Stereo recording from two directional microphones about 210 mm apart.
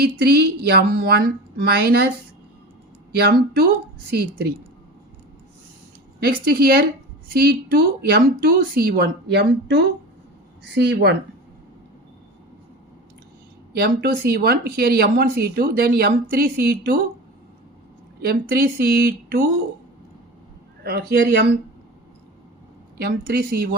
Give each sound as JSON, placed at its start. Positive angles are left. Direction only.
{"t": 0.0, "sound": "speech", "side_deg": -50}
{"t": 3.1, "sound": "speech", "side_deg": -50}
{"t": 6.1, "sound": "speech", "side_deg": -45}
{"t": 13.7, "sound": "speech", "side_deg": -50}
{"t": 18.2, "sound": "speech", "side_deg": -50}
{"t": 20.8, "sound": "speech", "side_deg": -50}
{"t": 23.0, "sound": "speech", "side_deg": -45}